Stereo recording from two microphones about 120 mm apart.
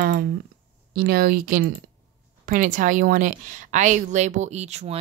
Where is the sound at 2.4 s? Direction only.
90° right.